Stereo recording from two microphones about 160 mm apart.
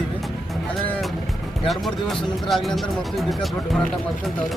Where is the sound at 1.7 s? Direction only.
Centre (ahead or behind).